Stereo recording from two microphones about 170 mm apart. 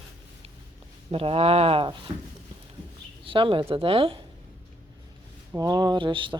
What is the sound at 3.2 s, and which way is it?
Speech, 30° right (ahead or behind).